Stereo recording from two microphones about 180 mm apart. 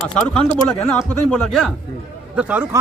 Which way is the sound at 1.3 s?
5° left (ahead or behind).